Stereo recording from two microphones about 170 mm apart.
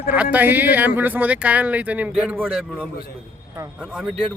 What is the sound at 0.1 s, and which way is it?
Speech, 10° right (ahead or behind).